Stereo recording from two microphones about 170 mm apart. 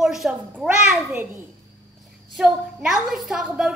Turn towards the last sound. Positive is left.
turn(degrees=-5)  # may be behind; listen again after turning